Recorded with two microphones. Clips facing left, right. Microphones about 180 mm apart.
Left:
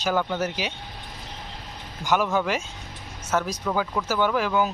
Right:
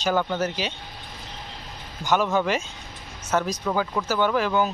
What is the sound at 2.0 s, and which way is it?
Speech, 10° left (ahead or behind).